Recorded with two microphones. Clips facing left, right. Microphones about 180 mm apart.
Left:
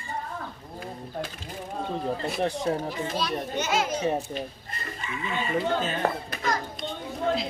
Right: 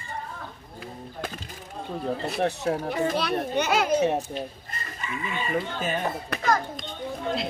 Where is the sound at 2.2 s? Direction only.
5° right (ahead or behind).